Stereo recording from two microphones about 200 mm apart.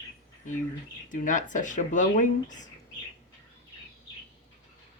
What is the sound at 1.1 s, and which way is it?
Speech, 40° left (ahead or behind).